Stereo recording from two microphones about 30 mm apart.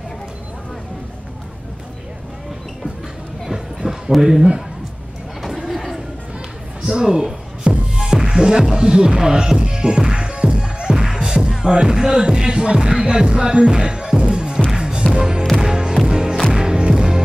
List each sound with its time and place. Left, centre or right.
3.4 s clip-clop: centre
4.2 s a man's voice: centre
5.7 s a sound: centre
6.9 s music: right
8.7 s speech: right
9.2 s music: right
13.0 s speech: right
14.8 s music: right